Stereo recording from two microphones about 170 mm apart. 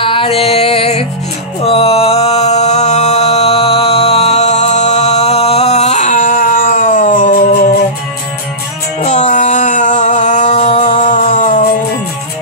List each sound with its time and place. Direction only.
0.0 s music: 30° left (ahead or behind)
1.6 s a sound: 35° left (ahead or behind); by 7.3 s 55° left (ahead or behind)
9.0 s music: 45° left (ahead or behind)